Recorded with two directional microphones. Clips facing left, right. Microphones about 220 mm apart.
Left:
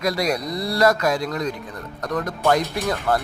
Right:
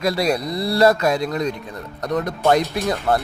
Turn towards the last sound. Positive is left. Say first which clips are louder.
# right 2 dB
turn(degrees=-15)  # may be behind; listen again after turning